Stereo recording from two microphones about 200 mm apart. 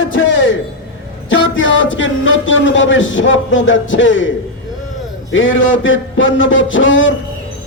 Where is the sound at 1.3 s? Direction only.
70° left (ahead or behind).